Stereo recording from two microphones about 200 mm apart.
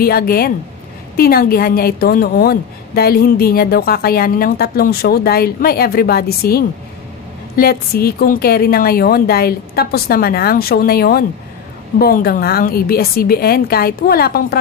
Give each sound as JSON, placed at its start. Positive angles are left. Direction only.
{"t": 0.0, "sound": "a woman's voice", "side_deg": 50}